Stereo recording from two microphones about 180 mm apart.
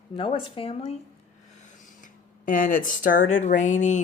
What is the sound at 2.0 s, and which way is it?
Speech, 45° left (ahead or behind).